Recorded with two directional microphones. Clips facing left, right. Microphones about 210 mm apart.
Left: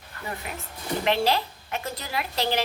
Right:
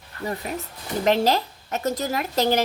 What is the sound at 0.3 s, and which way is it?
A woman's voice, 40° right (ahead or behind).